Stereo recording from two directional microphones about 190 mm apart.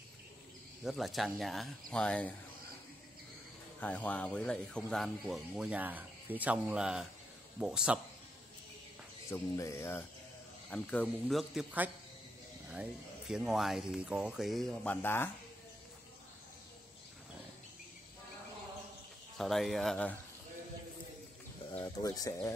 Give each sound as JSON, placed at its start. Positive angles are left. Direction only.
{"t": 0.8, "sound": "speech", "side_deg": 0}
{"t": 3.8, "sound": "speech", "side_deg": 10}
{"t": 9.3, "sound": "speech", "side_deg": 15}
{"t": 13.3, "sound": "speech", "side_deg": -5}
{"t": 19.3, "sound": "speech", "side_deg": 0}
{"t": 21.6, "sound": "speech", "side_deg": 20}